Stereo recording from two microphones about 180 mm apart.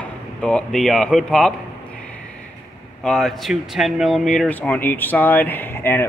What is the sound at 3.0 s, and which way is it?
Speech, 5° left (ahead or behind).